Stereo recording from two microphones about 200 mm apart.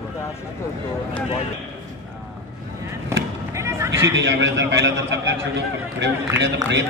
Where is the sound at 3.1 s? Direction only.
15° right (ahead or behind).